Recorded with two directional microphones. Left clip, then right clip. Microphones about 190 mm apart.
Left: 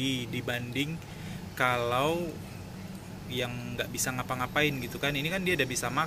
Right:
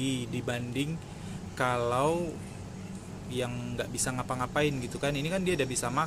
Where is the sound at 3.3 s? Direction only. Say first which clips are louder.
Even; 20° right (ahead or behind).